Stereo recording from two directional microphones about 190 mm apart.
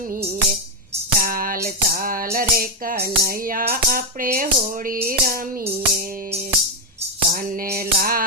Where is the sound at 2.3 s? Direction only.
50° right (ahead or behind).